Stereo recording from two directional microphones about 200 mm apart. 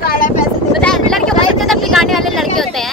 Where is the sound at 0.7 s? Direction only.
Centre (ahead or behind).